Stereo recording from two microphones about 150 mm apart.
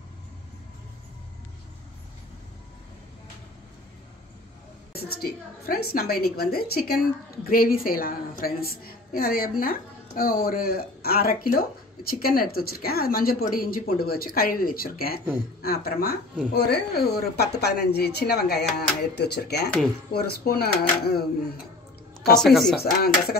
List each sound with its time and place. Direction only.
4.9 s speech: 90° left
7.4 s a woman's voice: 80° left
22.3 s a woman's voice: centre (ahead or behind)
22.8 s speech: 90° left